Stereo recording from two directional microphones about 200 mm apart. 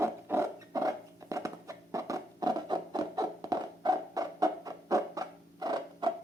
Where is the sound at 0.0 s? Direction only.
15° right (ahead or behind).